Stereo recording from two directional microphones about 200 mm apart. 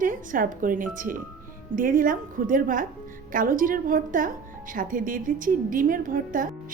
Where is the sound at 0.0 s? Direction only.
45° right (ahead or behind).